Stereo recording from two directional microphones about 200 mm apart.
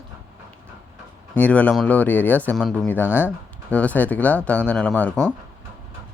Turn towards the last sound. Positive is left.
turn(degrees=5)  # may be behind; listen again after turning